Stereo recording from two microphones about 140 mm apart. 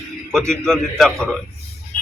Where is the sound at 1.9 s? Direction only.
90° left.